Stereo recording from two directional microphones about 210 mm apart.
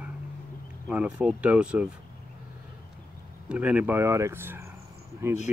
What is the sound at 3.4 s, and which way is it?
Speech, 5° right (ahead or behind).